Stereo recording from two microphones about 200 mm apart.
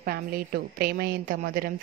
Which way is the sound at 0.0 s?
50° right (ahead or behind).